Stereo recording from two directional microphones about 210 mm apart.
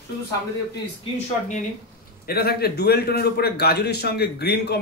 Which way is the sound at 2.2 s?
45° left (ahead or behind).